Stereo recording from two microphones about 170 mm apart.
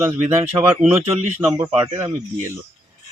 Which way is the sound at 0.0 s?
10° right (ahead or behind).